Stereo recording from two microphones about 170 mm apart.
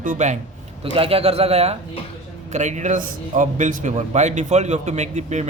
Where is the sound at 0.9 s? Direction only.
35° right (ahead or behind).